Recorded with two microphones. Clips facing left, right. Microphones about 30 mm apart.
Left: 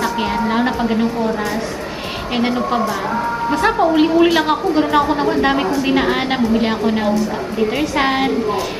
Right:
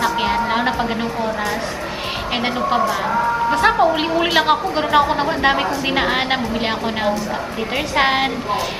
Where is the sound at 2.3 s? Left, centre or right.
Centre.